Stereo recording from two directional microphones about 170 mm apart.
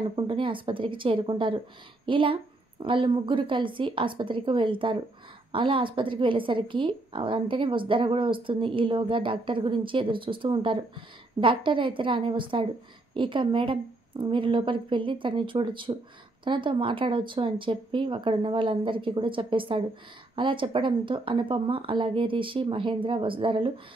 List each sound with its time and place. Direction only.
0.1 s a woman's voice: 30° right (ahead or behind)